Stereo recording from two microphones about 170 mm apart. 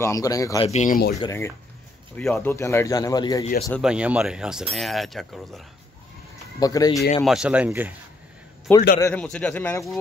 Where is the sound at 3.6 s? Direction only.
Centre (ahead or behind).